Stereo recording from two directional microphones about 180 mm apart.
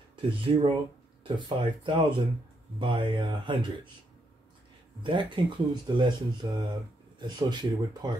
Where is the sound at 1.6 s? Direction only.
30° right (ahead or behind).